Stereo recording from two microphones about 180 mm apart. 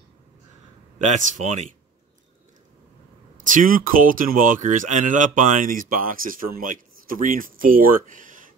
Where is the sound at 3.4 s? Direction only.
50° right (ahead or behind).